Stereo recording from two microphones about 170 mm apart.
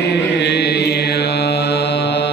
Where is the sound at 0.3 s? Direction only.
85° left.